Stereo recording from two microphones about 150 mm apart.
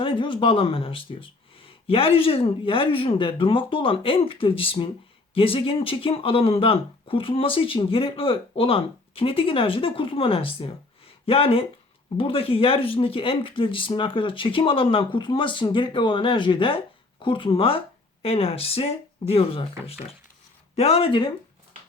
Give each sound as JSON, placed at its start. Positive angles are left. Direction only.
{"t": 0.0, "sound": "speech", "side_deg": 35}